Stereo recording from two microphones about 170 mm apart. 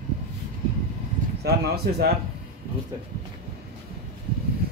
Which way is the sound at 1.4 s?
70° right (ahead or behind).